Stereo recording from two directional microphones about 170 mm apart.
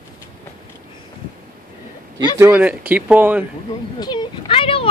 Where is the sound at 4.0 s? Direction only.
25° left (ahead or behind).